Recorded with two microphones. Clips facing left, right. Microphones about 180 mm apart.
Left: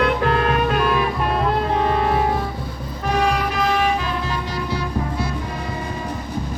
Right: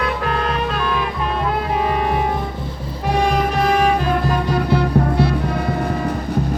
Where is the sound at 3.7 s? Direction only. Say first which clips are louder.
Right 4 dB; 50° right (ahead or behind).